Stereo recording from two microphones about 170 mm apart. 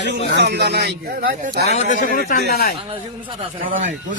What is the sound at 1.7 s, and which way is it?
A man's voice, 50° left (ahead or behind).